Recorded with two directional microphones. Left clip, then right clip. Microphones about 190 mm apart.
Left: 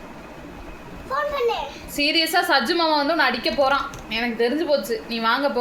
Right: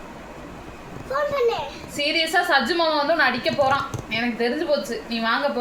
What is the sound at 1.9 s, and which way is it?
A woman's voice, 50° left (ahead or behind).